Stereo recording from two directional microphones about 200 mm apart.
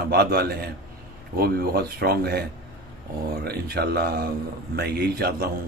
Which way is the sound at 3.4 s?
50° right (ahead or behind).